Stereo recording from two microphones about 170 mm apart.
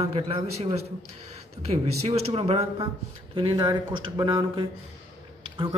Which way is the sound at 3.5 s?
25° right (ahead or behind).